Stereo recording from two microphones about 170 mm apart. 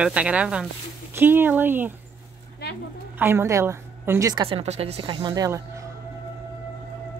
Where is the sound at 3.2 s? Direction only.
15° right (ahead or behind).